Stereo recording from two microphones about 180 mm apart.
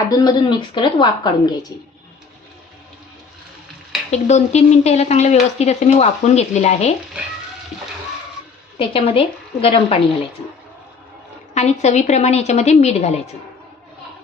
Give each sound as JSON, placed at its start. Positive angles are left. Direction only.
{"t": 0.1, "sound": "speech", "side_deg": 20}
{"t": 4.1, "sound": "speech", "side_deg": 40}
{"t": 8.8, "sound": "speech", "side_deg": 30}
{"t": 11.5, "sound": "speech", "side_deg": 40}